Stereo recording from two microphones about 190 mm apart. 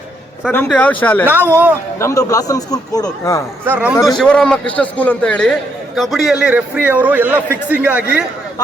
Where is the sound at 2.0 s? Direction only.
15° left (ahead or behind).